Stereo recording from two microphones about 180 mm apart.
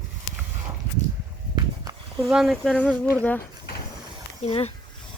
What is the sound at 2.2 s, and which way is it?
Speech, centre (ahead or behind).